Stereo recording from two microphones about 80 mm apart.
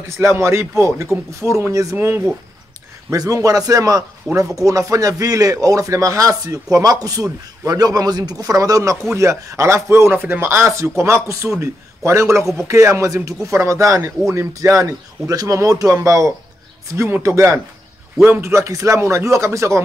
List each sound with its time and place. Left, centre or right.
0.2 s speech: right
2.0 s speech: right
3.1 s speech: right